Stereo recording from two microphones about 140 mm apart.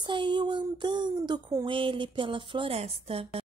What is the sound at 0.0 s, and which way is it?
A woman's voice, 35° right (ahead or behind).